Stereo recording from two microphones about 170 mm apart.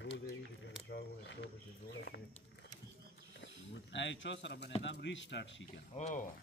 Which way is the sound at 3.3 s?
90° left.